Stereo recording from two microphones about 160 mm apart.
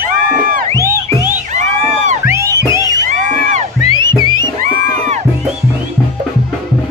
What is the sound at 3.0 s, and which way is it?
Music, 50° right (ahead or behind).